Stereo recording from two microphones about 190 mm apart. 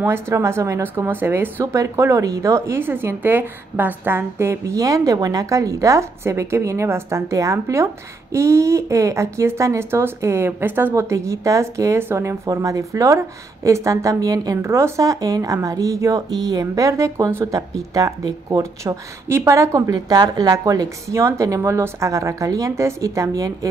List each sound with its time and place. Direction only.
0.0 s speech: 15° right (ahead or behind)